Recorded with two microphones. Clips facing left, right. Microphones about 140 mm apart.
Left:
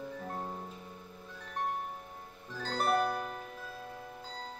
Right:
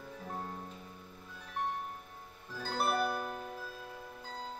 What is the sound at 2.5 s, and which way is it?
Music, 5° right (ahead or behind).